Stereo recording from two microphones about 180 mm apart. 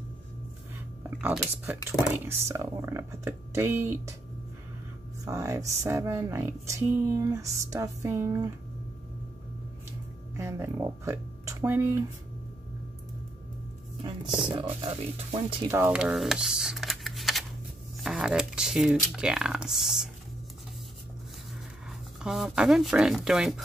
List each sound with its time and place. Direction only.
1.2 s speech: centre (ahead or behind)
2.2 s speech: 15° right (ahead or behind)
5.2 s speech: 15° right (ahead or behind)
10.3 s speech: 15° right (ahead or behind)
14.0 s speech: 25° right (ahead or behind)
15.7 s speech: 10° right (ahead or behind)
17.9 s a sound: centre (ahead or behind)
18.9 s speech: 5° right (ahead or behind)
22.2 s speech: centre (ahead or behind)